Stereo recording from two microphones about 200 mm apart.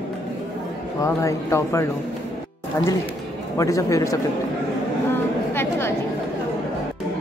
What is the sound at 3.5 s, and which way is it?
Speech, 15° left (ahead or behind).